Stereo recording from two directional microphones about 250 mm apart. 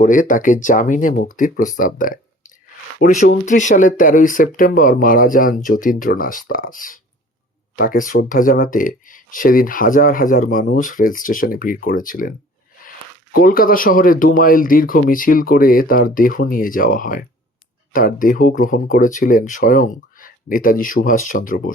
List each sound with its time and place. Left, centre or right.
0.0 s speech: left
13.3 s speech: left